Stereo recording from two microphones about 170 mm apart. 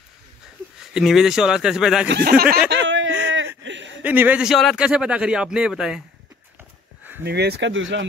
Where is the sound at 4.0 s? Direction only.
10° right (ahead or behind).